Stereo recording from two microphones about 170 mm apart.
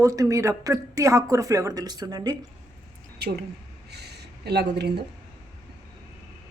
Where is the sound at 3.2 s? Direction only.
70° right (ahead or behind).